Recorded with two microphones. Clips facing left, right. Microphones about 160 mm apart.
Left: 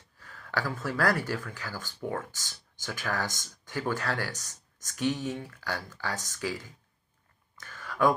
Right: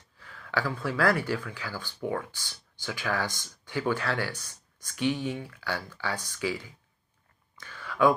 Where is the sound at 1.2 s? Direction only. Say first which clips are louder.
Right 2 dB; 45° left (ahead or behind).